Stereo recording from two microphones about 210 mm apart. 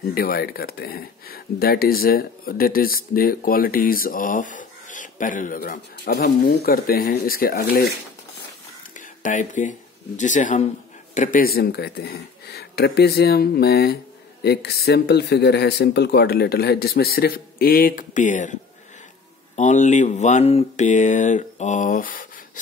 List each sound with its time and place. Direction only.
0.0 s speech: 45° left (ahead or behind)
8.9 s speech: 35° left (ahead or behind)